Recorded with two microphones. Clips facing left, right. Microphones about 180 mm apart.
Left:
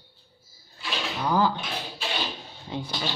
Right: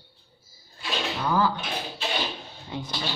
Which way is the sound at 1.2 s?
15° left (ahead or behind).